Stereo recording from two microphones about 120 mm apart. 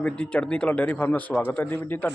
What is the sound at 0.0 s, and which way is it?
Speech, 10° left (ahead or behind).